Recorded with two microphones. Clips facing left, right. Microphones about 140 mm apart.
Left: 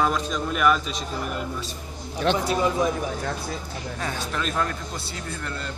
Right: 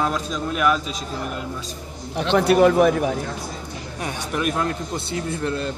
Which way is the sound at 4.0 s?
15° right (ahead or behind).